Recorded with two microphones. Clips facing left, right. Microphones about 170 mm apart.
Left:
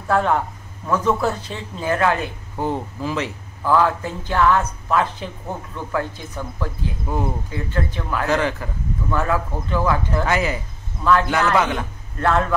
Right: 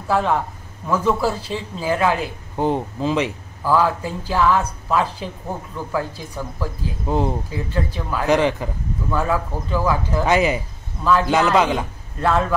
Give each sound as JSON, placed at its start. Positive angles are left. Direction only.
{"t": 0.1, "sound": "a man's voice", "side_deg": -5}
{"t": 2.5, "sound": "a man's voice", "side_deg": -20}
{"t": 7.1, "sound": "a man's voice", "side_deg": -20}